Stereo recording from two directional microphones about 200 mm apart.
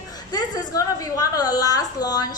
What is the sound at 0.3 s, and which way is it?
A woman's voice, 20° left (ahead or behind).